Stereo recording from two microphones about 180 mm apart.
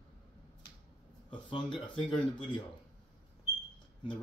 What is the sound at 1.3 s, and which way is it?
Speech, 30° left (ahead or behind).